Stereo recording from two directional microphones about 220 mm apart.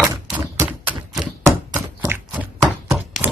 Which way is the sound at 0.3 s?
5° right (ahead or behind).